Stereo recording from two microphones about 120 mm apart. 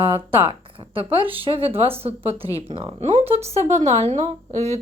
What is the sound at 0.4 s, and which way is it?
Speech, 45° right (ahead or behind).